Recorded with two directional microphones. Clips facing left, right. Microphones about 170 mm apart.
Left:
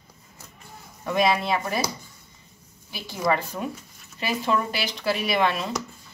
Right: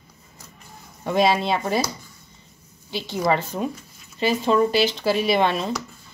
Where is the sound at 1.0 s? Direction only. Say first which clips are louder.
Right 3 dB; 30° right (ahead or behind).